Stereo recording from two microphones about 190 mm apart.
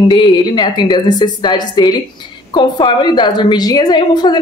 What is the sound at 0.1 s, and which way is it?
A woman's voice, 25° left (ahead or behind).